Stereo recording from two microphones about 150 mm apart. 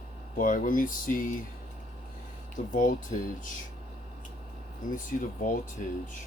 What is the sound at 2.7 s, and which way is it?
Speech, 60° left (ahead or behind).